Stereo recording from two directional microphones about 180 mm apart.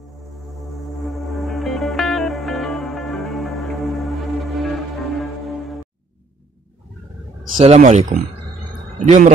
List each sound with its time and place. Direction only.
1.0 s music: centre (ahead or behind)
7.5 s a man's voice: 35° right (ahead or behind)